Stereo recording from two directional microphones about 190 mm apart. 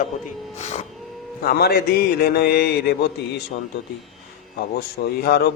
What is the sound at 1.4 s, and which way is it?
A man's voice, 55° left (ahead or behind).